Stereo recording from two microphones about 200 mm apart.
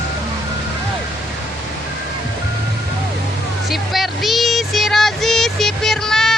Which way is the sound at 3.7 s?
Centre (ahead or behind).